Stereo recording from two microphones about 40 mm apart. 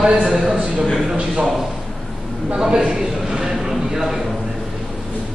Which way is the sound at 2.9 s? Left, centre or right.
Centre.